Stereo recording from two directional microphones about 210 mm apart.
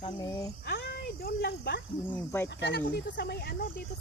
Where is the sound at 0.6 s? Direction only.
50° left (ahead or behind).